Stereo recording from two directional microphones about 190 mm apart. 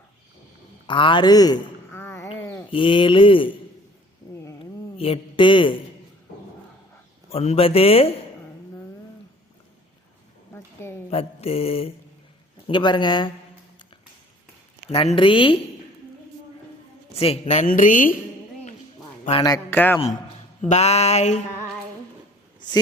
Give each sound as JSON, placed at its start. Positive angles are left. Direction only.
{"t": 0.9, "sound": "a sound", "side_deg": 25}
{"t": 2.4, "sound": "sheep", "side_deg": 10}
{"t": 2.6, "sound": "speech", "side_deg": 25}
{"t": 4.9, "sound": "a man's voice", "side_deg": 30}
{"t": 7.3, "sound": "a woman's voice", "side_deg": 30}
{"t": 10.5, "sound": "a sound", "side_deg": 10}
{"t": 11.1, "sound": "a woman's voice", "side_deg": 30}
{"t": 14.8, "sound": "speech", "side_deg": 30}
{"t": 17.2, "sound": "a woman's voice", "side_deg": 30}
{"t": 19.3, "sound": "a man's voice", "side_deg": 20}
{"t": 20.7, "sound": "a woman's voice", "side_deg": 35}